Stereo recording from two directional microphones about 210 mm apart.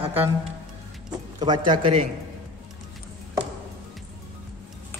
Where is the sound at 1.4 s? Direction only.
20° right (ahead or behind).